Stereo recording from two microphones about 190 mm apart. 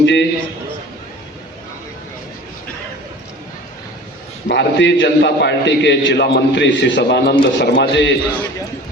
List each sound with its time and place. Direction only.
0.0 s a man's voice: 70° left (ahead or behind)
4.4 s a man's voice: 65° left (ahead or behind)